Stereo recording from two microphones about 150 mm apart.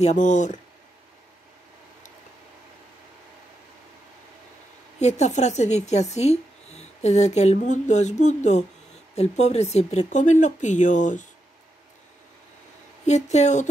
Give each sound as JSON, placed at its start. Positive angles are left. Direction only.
{"t": 0.0, "sound": "speech", "side_deg": 50}
{"t": 5.0, "sound": "speech", "side_deg": 50}
{"t": 13.0, "sound": "speech", "side_deg": 50}